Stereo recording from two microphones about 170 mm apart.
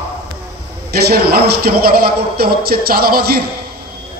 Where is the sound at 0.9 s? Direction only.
65° right (ahead or behind).